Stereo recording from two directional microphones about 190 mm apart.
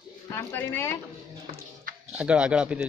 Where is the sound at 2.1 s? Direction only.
5° right (ahead or behind).